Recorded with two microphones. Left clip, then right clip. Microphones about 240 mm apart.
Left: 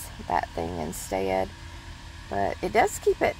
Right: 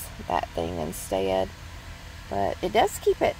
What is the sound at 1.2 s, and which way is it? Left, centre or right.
Speech, centre.